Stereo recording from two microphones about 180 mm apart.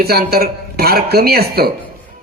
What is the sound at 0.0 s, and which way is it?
A man's voice, 60° right (ahead or behind).